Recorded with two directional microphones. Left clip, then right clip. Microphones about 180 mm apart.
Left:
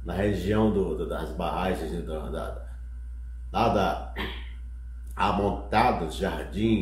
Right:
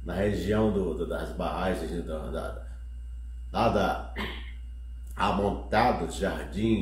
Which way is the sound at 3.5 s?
15° left (ahead or behind).